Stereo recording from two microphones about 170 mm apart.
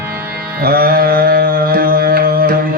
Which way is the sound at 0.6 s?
60° right (ahead or behind).